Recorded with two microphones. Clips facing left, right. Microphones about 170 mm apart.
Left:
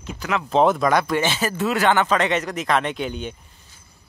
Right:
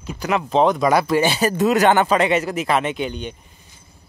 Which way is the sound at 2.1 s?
10° right (ahead or behind).